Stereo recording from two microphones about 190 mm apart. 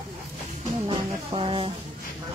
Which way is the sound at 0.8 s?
30° right (ahead or behind).